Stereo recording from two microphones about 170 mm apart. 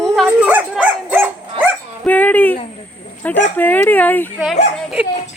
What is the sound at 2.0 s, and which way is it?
Speech, 10° left (ahead or behind).